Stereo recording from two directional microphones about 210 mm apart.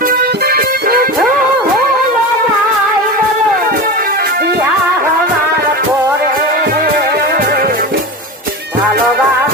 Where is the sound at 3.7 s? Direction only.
45° right (ahead or behind).